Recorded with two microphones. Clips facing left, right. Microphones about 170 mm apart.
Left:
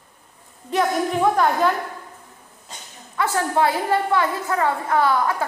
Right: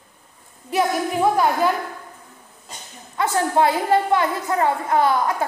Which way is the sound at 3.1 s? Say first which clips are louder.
Right 2 dB; 20° right (ahead or behind).